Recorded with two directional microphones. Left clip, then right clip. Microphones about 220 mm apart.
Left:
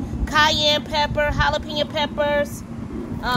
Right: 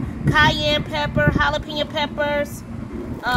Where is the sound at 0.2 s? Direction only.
30° left (ahead or behind).